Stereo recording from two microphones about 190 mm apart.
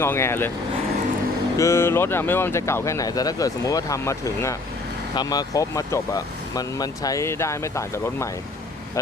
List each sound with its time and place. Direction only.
0.0 s speech: 15° left (ahead or behind)
1.5 s speech: 15° left (ahead or behind)